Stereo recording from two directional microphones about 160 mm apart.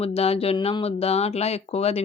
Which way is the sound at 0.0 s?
40° left (ahead or behind).